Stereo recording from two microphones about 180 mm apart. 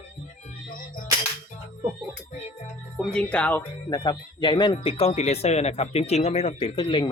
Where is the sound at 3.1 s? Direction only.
5° left (ahead or behind).